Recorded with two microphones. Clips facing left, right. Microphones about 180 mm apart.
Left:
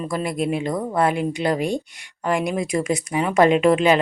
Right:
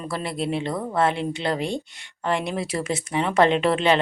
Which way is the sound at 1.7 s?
15° left (ahead or behind).